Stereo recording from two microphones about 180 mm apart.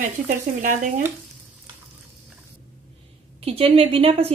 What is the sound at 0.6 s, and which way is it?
Speech, 45° right (ahead or behind).